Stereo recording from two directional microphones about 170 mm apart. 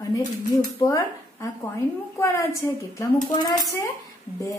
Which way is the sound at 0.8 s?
20° left (ahead or behind).